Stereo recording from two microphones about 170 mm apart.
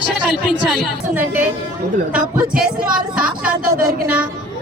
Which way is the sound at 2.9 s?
55° right (ahead or behind).